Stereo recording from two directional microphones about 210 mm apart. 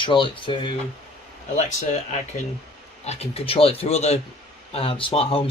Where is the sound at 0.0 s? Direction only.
25° left (ahead or behind).